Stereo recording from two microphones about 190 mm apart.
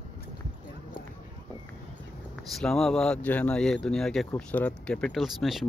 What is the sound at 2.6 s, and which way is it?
Speech, 5° left (ahead or behind).